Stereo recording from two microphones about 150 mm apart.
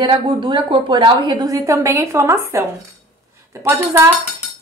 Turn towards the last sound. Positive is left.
turn(degrees=-20)  # may be behind; listen again after turning